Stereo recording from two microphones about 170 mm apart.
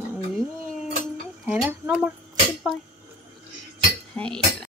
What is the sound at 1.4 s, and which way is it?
Speech, 10° right (ahead or behind).